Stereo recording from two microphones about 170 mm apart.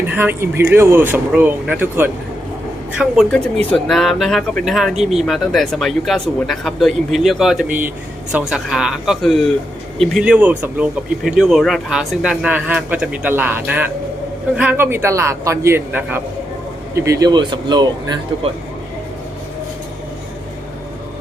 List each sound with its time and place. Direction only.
0.1 s speech: 10° right (ahead or behind)